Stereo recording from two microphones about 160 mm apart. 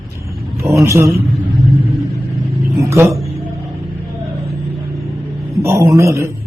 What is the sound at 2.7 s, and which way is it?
Speech, 15° right (ahead or behind).